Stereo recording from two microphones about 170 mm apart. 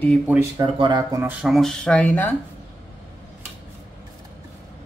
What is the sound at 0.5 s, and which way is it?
Speech, 30° right (ahead or behind).